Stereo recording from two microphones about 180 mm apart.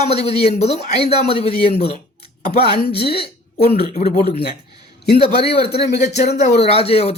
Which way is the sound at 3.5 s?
60° left (ahead or behind).